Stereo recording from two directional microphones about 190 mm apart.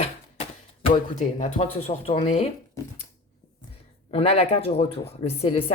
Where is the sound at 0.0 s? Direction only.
30° left (ahead or behind).